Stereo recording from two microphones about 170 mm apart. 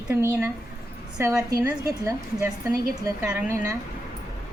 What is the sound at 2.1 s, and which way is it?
Speech, 20° right (ahead or behind).